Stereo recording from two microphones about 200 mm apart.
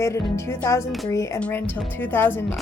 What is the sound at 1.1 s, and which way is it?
Speech, 15° left (ahead or behind).